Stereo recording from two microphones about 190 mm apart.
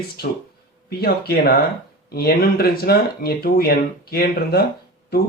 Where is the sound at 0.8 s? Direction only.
55° left (ahead or behind).